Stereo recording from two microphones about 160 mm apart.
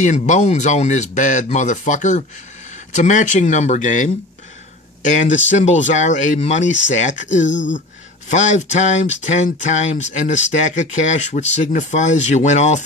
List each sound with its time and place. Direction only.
0.0 s speech: 50° left (ahead or behind)